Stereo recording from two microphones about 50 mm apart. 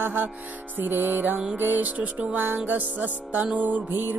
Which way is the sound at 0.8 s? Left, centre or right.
Right.